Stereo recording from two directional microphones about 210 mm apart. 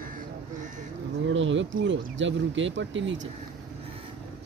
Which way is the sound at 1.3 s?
60° right (ahead or behind).